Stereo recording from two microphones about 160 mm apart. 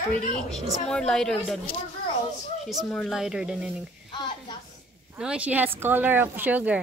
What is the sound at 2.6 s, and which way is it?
Speech, centre (ahead or behind).